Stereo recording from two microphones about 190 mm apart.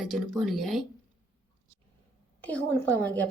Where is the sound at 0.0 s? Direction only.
Centre (ahead or behind).